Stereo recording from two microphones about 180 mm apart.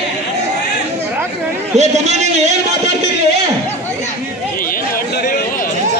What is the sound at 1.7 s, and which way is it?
Speech, 40° right (ahead or behind).